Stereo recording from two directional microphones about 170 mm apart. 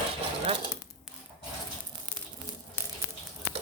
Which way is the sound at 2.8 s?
15° left (ahead or behind).